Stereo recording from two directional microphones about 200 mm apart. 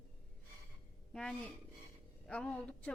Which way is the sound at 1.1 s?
5° left (ahead or behind).